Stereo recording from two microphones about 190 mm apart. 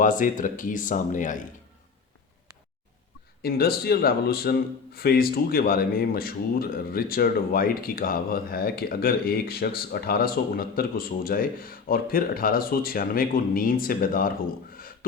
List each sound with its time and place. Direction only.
0.0 s speech: 45° left (ahead or behind)
3.4 s speech: 55° left (ahead or behind)